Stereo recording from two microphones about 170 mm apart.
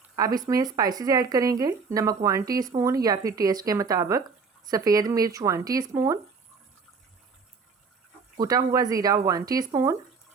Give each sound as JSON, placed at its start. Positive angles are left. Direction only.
{"t": 0.2, "sound": "speech", "side_deg": -20}
{"t": 8.4, "sound": "speech", "side_deg": -20}